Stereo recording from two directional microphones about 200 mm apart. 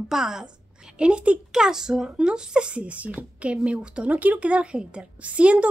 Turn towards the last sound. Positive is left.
turn(degrees=-5)  # may be behind; listen again after turning